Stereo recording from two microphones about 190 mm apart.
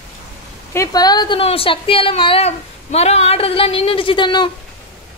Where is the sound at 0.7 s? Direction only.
20° left (ahead or behind).